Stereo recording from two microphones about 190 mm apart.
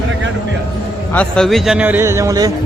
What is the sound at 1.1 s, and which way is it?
A man's voice, 5° left (ahead or behind).